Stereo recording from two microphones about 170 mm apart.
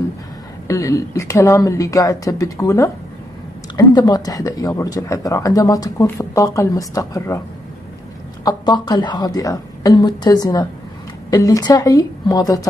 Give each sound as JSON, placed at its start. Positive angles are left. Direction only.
{"t": 0.7, "sound": "speech", "side_deg": 20}
{"t": 8.5, "sound": "speech", "side_deg": 25}